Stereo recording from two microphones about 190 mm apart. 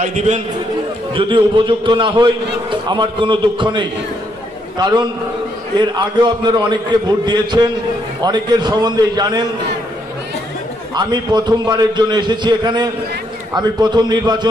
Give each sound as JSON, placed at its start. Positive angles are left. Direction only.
{"t": 0.0, "sound": "a man's voice", "side_deg": -35}
{"t": 1.1, "sound": "a man's voice", "side_deg": -25}
{"t": 5.8, "sound": "a man's voice", "side_deg": -25}
{"t": 11.0, "sound": "a man's voice", "side_deg": -20}